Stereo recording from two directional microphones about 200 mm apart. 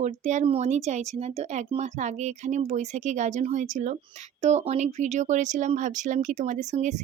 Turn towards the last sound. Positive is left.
turn(degrees=-35)  # may be behind; listen again after turning